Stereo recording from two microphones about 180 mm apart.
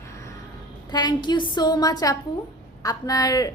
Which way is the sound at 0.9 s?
25° left (ahead or behind).